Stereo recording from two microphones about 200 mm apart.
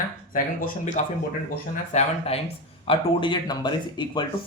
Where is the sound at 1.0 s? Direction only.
40° left (ahead or behind).